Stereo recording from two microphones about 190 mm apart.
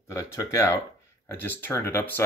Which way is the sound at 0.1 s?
15° left (ahead or behind).